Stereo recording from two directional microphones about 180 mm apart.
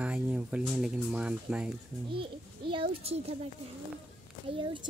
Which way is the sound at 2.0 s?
30° right (ahead or behind).